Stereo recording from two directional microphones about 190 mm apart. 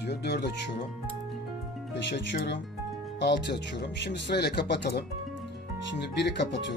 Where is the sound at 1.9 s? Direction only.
65° left (ahead or behind).